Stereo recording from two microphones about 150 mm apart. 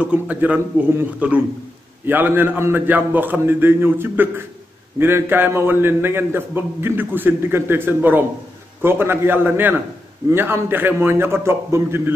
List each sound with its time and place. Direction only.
0.0 s a man's voice: 10° right (ahead or behind)